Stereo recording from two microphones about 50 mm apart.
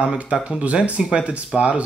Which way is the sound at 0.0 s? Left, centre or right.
Right.